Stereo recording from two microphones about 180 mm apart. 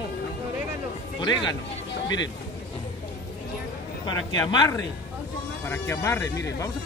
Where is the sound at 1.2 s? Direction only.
25° left (ahead or behind).